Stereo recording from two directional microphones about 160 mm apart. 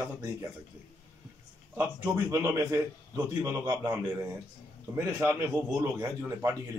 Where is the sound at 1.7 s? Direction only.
15° right (ahead or behind).